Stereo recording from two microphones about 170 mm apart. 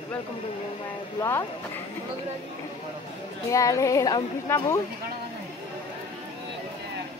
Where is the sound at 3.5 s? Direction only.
20° left (ahead or behind).